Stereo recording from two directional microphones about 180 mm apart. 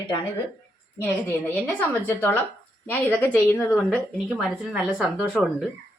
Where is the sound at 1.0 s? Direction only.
10° left (ahead or behind).